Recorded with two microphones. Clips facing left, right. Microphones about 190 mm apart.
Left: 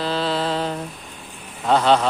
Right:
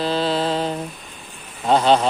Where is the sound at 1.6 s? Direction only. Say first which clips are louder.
Right 1 dB; 25° right (ahead or behind).